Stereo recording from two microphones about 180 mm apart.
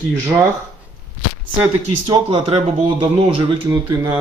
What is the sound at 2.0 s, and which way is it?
Speech, 30° right (ahead or behind).